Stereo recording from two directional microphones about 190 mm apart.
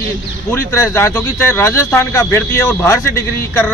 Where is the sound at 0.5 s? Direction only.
15° left (ahead or behind).